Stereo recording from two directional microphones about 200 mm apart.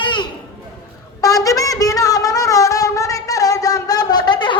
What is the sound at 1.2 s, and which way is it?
Wind instrument, 15° left (ahead or behind).